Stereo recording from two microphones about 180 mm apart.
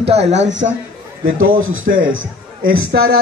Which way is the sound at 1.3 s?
90° right.